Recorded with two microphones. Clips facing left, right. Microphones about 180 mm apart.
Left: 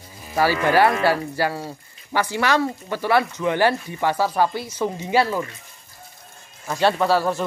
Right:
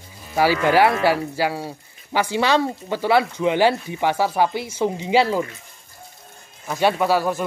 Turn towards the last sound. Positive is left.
turn(degrees=-10)  # may be behind; listen again after turning